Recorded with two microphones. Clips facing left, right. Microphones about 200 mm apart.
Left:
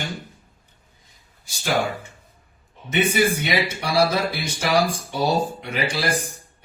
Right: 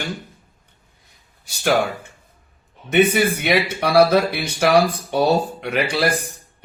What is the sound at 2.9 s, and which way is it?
Speech, 60° right (ahead or behind).